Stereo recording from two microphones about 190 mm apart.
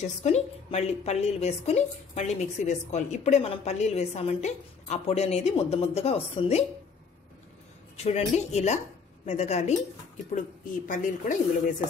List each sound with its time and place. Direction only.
0.0 s a woman's voice: 35° left (ahead or behind)
8.0 s a woman's voice: 35° left (ahead or behind)